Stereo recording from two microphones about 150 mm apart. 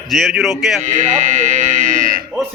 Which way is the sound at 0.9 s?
55° right (ahead or behind).